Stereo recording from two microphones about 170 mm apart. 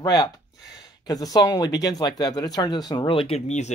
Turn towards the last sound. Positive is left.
turn(degrees=40)  # may be behind; listen again after turning